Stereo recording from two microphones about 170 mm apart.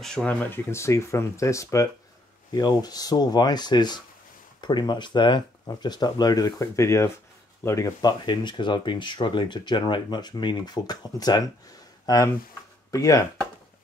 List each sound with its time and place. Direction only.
0.0 s speech: 5° left (ahead or behind)